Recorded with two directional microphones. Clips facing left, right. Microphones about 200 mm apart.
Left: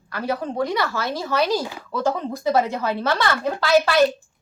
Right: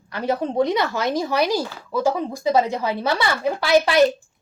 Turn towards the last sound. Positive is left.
turn(degrees=-15)  # may be behind; listen again after turning